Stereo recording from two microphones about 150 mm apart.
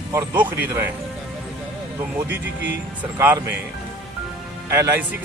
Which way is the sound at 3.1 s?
15° right (ahead or behind).